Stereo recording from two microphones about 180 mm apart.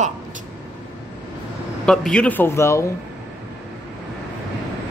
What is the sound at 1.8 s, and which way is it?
A man's voice, 5° left (ahead or behind).